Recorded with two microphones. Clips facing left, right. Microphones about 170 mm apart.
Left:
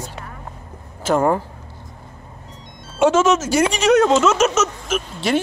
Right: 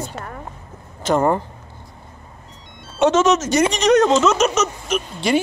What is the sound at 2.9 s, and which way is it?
A woman's voice, 5° left (ahead or behind).